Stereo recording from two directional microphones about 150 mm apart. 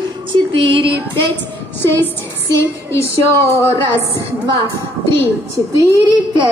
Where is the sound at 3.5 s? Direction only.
15° left (ahead or behind).